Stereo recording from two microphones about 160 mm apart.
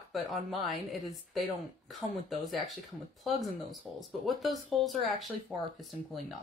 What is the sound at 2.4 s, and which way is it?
A woman's voice, centre (ahead or behind).